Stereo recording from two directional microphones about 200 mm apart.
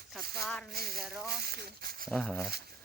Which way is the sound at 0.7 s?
50° right (ahead or behind).